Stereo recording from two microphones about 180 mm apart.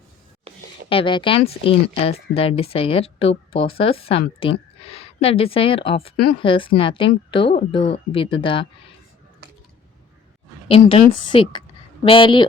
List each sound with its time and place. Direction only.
0.5 s a sound: 35° right (ahead or behind)
0.9 s a woman's voice: 30° left (ahead or behind)
10.7 s a woman's voice: 30° left (ahead or behind)